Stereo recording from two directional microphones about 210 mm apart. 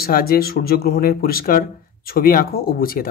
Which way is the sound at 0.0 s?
45° left (ahead or behind).